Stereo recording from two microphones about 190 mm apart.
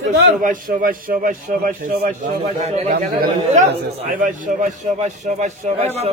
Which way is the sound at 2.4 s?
35° right (ahead or behind).